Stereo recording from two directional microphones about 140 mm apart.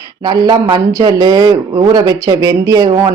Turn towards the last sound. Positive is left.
turn(degrees=-25)  # may be behind; listen again after turning